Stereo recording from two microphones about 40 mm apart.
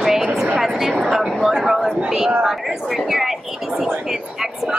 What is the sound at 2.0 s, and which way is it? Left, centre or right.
Speech, centre.